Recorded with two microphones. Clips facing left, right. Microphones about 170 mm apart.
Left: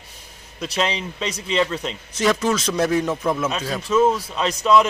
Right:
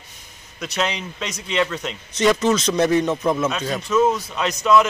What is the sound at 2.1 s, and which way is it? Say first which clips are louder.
A man's voice: right 2 dB; 5° left (ahead or behind).